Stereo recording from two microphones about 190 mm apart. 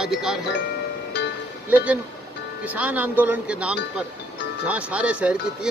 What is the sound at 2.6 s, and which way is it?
Speech, 10° right (ahead or behind).